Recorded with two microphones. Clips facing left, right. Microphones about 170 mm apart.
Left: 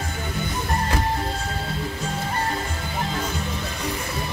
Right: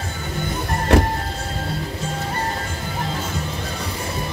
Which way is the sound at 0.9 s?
70° right (ahead or behind).